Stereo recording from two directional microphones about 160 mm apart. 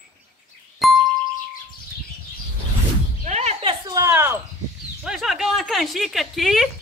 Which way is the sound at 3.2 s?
45° right (ahead or behind).